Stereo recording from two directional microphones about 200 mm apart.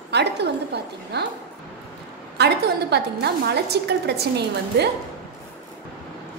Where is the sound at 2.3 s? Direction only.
55° right (ahead or behind).